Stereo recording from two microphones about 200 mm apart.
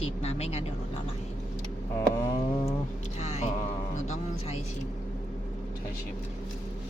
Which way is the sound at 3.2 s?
35° left (ahead or behind).